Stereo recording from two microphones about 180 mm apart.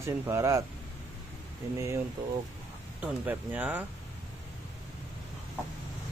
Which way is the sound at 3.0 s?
10° right (ahead or behind).